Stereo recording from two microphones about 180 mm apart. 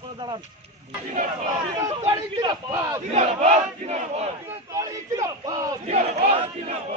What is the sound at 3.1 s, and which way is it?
Battle cry, 40° right (ahead or behind).